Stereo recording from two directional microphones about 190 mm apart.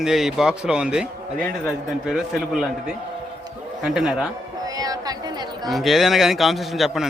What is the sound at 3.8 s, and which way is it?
Speech, 5° right (ahead or behind).